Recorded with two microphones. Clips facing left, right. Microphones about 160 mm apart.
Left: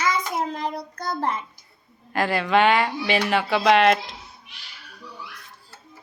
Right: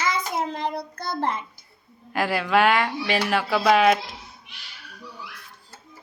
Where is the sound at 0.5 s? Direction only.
30° right (ahead or behind).